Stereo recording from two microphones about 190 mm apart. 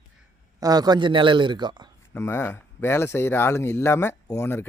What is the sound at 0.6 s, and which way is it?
A man's voice, 20° right (ahead or behind).